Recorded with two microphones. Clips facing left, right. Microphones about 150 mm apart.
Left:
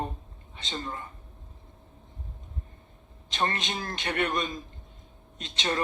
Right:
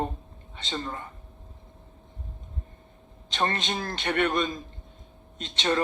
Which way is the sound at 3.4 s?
35° right (ahead or behind).